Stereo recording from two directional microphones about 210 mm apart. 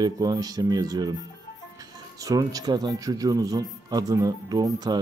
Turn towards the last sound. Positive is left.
turn(degrees=-20)  # may be behind; listen again after turning